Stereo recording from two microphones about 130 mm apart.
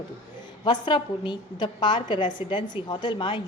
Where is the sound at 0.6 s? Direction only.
35° left (ahead or behind).